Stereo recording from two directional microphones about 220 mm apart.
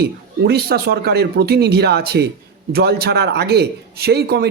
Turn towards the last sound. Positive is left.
turn(degrees=-45)  # may be behind; listen again after turning